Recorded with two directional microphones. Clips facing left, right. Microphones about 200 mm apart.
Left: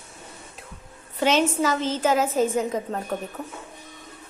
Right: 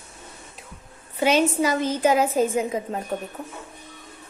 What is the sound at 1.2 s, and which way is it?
A woman's voice, 10° right (ahead or behind).